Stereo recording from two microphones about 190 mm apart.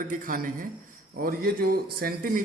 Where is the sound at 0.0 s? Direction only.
45° right (ahead or behind).